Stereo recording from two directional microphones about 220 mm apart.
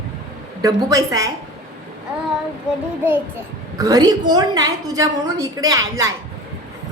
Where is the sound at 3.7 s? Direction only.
15° right (ahead or behind).